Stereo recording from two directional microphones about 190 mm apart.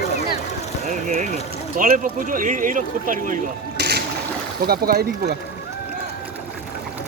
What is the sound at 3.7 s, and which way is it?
Boat, 60° right (ahead or behind).